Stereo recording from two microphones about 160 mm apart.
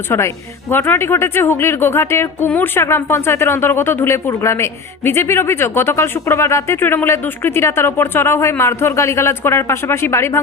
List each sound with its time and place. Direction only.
0.7 s a woman's voice: 10° left (ahead or behind)